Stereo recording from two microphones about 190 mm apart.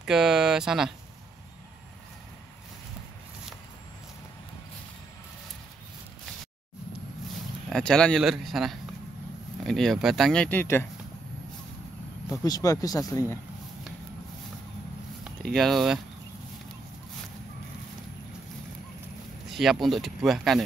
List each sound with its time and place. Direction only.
0.0 s speech: 5° right (ahead or behind)
7.7 s speech: 5° left (ahead or behind)
12.4 s speech: 20° left (ahead or behind)
15.5 s speech: centre (ahead or behind)
19.5 s speech: centre (ahead or behind)